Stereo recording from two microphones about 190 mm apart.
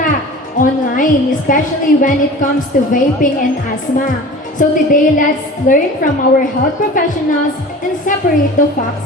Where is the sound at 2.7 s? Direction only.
45° left (ahead or behind).